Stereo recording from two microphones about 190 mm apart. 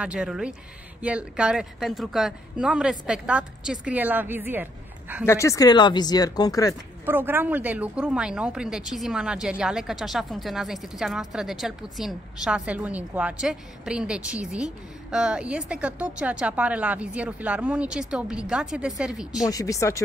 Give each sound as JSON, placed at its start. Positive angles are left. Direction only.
{"t": 0.0, "sound": "speech", "side_deg": -5}
{"t": 5.2, "sound": "speech", "side_deg": 15}
{"t": 7.1, "sound": "speech", "side_deg": -10}
{"t": 19.4, "sound": "speech", "side_deg": 20}